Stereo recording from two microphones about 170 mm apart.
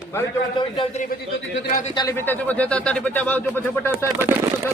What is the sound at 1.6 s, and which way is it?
Speech, 60° left (ahead or behind).